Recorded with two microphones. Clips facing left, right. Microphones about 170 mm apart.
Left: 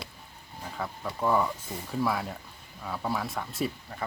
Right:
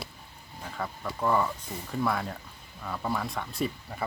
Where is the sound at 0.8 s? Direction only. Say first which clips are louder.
Even; 5° left (ahead or behind).